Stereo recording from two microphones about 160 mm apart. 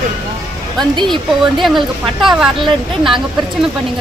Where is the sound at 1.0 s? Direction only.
Centre (ahead or behind).